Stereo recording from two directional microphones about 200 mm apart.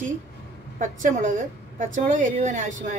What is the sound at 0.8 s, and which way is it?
A woman's voice, 40° right (ahead or behind).